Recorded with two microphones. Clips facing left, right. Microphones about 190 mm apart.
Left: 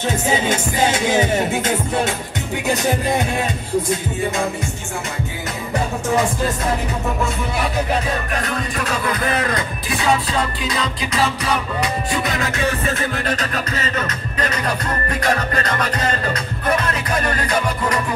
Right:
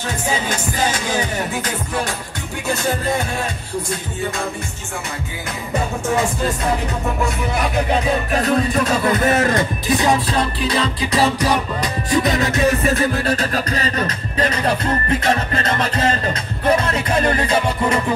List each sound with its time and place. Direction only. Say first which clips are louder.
0.5 s music: left 3 dB; 25° left (ahead or behind)
2.7 s music: left 1 dB; 15° left (ahead or behind)
8.3 s music: right 6 dB; 35° right (ahead or behind)
10.7 s music: right 3 dB; 35° right (ahead or behind)